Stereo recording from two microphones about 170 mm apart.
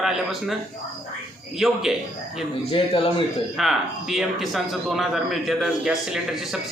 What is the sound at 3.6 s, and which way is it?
A man's voice, centre (ahead or behind).